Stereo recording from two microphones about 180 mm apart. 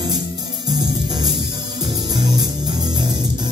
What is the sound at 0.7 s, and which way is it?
Music, 20° right (ahead or behind).